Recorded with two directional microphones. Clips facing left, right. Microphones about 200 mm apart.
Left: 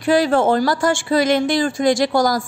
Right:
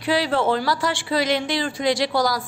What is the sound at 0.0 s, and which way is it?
A woman's voice, 45° left (ahead or behind).